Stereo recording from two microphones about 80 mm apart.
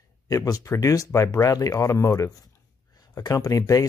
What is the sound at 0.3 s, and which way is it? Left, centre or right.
Speech, left.